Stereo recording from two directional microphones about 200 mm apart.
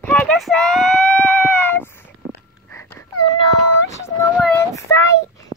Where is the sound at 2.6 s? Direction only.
10° left (ahead or behind).